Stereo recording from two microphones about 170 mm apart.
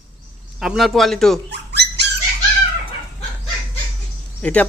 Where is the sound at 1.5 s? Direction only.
80° right.